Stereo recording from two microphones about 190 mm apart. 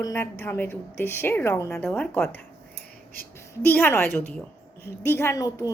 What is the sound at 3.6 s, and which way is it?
Speech, 10° left (ahead or behind).